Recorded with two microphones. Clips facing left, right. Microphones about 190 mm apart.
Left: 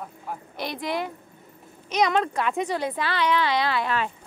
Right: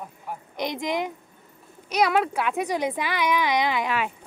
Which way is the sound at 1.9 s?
5° right (ahead or behind).